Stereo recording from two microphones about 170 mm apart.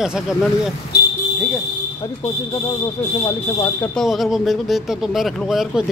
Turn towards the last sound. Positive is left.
turn(degrees=0)  # may be behind; listen again after turning